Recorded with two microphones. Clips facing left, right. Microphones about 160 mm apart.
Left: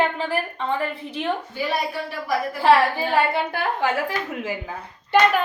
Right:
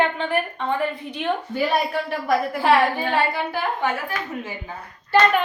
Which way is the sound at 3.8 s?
90° left.